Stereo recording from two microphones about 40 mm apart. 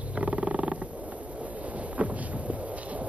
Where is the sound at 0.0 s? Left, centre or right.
Right.